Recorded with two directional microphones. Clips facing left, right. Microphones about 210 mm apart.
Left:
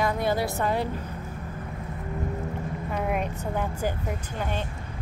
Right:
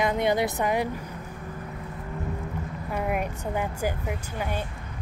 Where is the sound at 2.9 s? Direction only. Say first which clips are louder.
Right 1 dB; 5° right (ahead or behind).